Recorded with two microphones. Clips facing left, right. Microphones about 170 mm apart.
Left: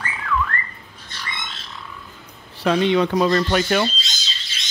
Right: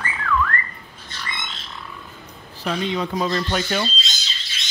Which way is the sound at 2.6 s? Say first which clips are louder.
Left 7 dB; 70° left (ahead or behind).